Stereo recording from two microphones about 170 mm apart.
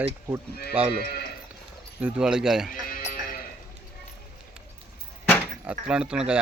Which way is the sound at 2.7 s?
55° left (ahead or behind).